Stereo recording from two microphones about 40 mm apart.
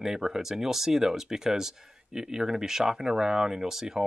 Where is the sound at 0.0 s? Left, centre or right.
Centre.